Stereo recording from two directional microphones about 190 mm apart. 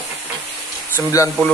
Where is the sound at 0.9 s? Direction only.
15° left (ahead or behind).